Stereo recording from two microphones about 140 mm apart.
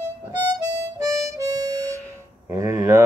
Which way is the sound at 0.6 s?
25° right (ahead or behind).